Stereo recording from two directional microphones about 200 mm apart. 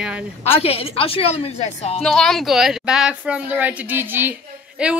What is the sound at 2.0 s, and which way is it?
Speech, centre (ahead or behind).